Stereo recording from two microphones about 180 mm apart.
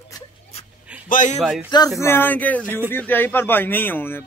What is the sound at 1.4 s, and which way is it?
Speech, 5° right (ahead or behind).